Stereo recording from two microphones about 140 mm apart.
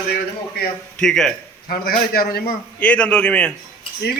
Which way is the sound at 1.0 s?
5° left (ahead or behind).